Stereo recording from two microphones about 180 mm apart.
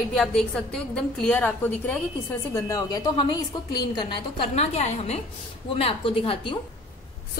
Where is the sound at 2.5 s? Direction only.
20° left (ahead or behind).